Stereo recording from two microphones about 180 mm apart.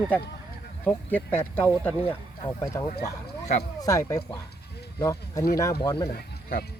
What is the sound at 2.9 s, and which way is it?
Speech, 45° left (ahead or behind).